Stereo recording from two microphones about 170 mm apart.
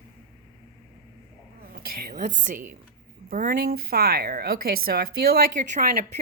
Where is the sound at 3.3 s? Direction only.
55° right (ahead or behind).